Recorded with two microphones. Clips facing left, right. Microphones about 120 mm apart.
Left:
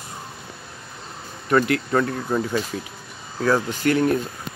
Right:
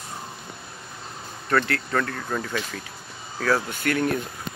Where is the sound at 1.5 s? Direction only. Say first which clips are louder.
Left 4 dB; 15° left (ahead or behind).